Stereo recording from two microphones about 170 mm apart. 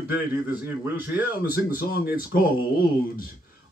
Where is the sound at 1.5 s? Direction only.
60° left (ahead or behind).